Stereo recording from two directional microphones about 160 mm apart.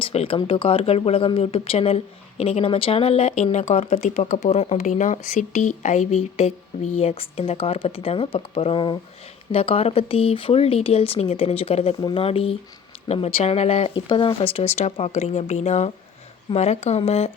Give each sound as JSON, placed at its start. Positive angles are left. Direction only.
{"t": 0.0, "sound": "speech", "side_deg": 35}